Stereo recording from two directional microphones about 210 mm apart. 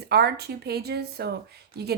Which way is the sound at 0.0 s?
50° right (ahead or behind).